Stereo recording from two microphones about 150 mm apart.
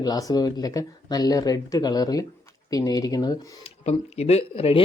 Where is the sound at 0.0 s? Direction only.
25° left (ahead or behind).